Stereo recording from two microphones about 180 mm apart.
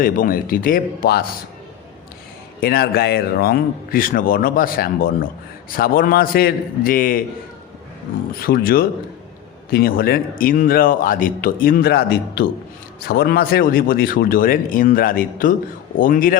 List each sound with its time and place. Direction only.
0.0 s a man's voice: 50° left (ahead or behind)
2.6 s a man's voice: 60° left (ahead or behind)
8.4 s a man's voice: 55° left (ahead or behind)